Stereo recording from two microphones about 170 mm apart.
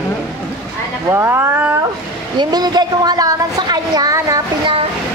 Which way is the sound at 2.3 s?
25° right (ahead or behind).